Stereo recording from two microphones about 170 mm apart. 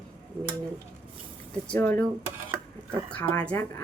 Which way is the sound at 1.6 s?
10° left (ahead or behind).